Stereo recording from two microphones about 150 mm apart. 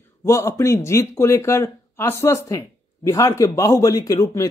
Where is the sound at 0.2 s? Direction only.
20° left (ahead or behind).